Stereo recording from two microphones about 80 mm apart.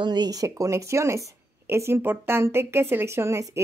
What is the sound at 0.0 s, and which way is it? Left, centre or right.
A woman's voice, right.